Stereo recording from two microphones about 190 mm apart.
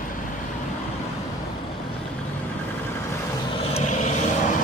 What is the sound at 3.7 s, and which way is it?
Vehicle, 40° left (ahead or behind).